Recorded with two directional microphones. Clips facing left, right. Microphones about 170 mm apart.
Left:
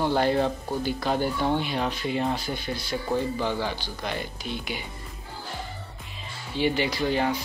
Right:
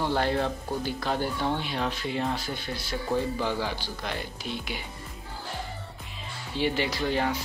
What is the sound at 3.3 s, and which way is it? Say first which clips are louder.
Speech: left 1 dB; 5° right (ahead or behind).